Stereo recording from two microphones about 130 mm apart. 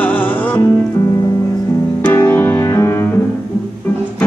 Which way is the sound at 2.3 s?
15° left (ahead or behind).